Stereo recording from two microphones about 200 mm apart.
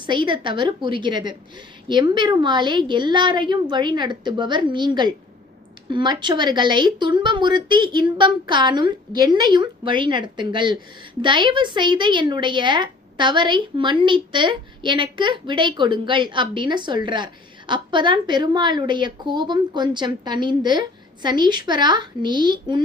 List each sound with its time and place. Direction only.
0.0 s a woman's voice: 25° right (ahead or behind)